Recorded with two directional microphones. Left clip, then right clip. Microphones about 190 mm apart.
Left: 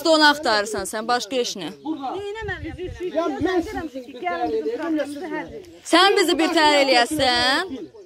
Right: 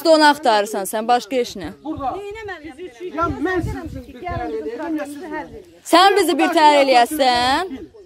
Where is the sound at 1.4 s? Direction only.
30° right (ahead or behind).